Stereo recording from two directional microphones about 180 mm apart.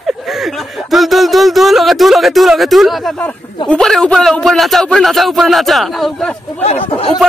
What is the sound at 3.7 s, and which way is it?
Speech, 5° left (ahead or behind).